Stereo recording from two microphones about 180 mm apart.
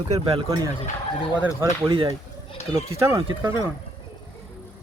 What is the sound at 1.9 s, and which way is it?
Speech, 30° right (ahead or behind).